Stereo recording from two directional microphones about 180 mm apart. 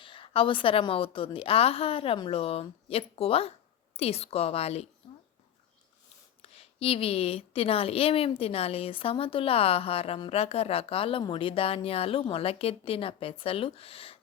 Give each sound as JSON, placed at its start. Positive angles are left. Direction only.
{"t": 0.0, "sound": "a woman's voice", "side_deg": 30}
{"t": 6.4, "sound": "a woman's voice", "side_deg": 35}